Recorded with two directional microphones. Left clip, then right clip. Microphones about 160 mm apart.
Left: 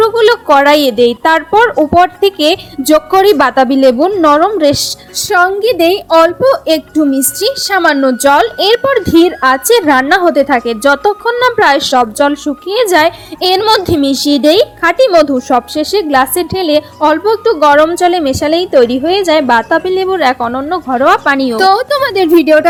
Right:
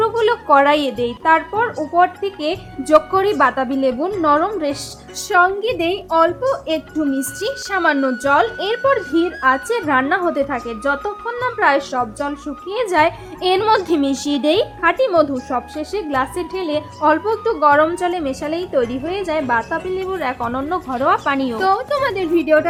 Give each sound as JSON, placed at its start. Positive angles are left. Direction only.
{"t": 0.0, "sound": "a woman's voice", "side_deg": 25}
{"t": 12.7, "sound": "speech", "side_deg": 25}
{"t": 20.5, "sound": "a woman's voice", "side_deg": 20}